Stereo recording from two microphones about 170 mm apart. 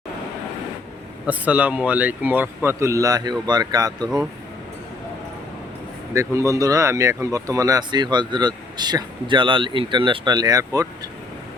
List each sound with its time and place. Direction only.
1.3 s speech: 10° right (ahead or behind)
6.1 s speech: 20° right (ahead or behind)